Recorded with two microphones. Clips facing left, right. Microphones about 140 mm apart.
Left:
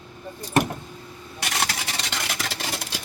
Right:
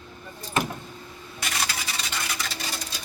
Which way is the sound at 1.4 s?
65° left (ahead or behind).